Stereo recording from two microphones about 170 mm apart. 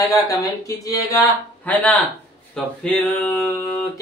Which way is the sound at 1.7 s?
10° left (ahead or behind).